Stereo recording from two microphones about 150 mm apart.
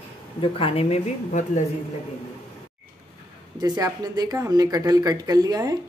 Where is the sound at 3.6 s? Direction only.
25° right (ahead or behind).